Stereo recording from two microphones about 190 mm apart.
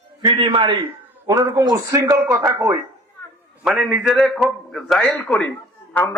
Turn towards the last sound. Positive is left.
turn(degrees=10)  # may be behind; listen again after turning